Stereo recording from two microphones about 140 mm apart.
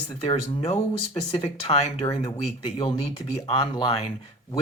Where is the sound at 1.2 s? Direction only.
30° left (ahead or behind).